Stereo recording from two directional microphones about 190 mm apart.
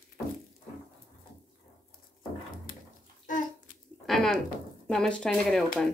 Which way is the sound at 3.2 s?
45° left (ahead or behind).